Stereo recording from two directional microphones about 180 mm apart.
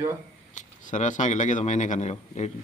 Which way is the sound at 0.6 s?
45° left (ahead or behind).